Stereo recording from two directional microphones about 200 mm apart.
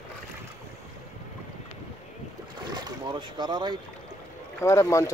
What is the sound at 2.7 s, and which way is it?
Speech, 20° right (ahead or behind).